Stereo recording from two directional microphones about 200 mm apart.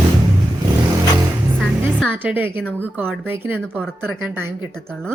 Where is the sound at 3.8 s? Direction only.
5° left (ahead or behind).